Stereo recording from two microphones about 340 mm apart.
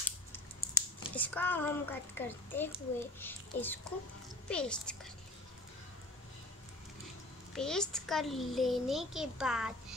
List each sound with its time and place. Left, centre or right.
0.7 s a child's voice: centre
7.5 s a child's voice: centre